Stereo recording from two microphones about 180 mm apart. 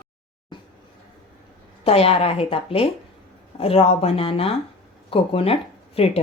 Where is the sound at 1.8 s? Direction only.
35° left (ahead or behind).